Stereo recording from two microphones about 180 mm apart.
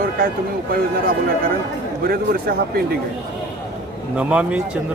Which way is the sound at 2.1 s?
55° right (ahead or behind).